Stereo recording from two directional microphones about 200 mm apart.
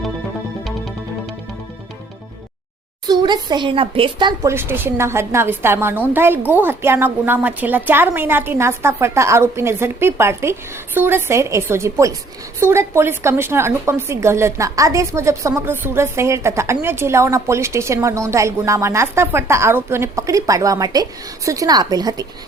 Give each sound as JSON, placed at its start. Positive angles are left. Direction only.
{"t": 3.1, "sound": "speech", "side_deg": -20}
{"t": 4.5, "sound": "a woman's voice", "side_deg": -10}